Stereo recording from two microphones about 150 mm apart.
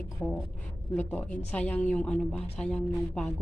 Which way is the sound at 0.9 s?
15° left (ahead or behind).